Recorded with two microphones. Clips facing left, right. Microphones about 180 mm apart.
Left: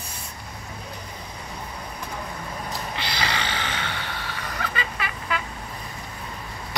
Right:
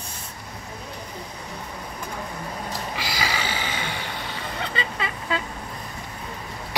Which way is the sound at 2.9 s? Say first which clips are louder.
Even; 10° right (ahead or behind).